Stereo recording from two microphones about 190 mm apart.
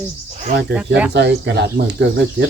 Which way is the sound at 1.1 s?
65° right (ahead or behind).